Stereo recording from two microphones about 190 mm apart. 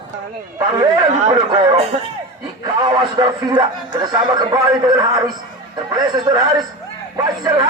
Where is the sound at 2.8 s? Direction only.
20° right (ahead or behind).